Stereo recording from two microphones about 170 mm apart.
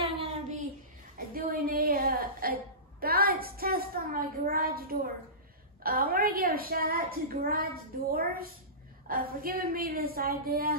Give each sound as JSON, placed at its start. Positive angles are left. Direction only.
{"t": 0.0, "sound": "child singing", "side_deg": -35}
{"t": 1.1, "sound": "a sound", "side_deg": -55}
{"t": 5.8, "sound": "a woman's voice", "side_deg": -60}